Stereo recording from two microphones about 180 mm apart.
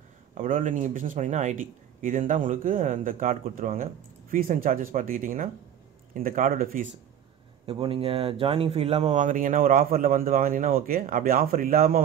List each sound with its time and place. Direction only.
0.3 s speech: 50° right (ahead or behind)
7.6 s speech: 30° right (ahead or behind); by 12.0 s 55° right (ahead or behind)